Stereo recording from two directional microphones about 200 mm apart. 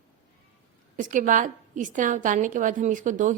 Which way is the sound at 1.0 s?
40° right (ahead or behind).